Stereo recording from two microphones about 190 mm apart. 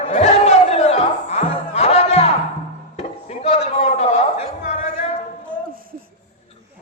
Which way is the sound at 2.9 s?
35° left (ahead or behind).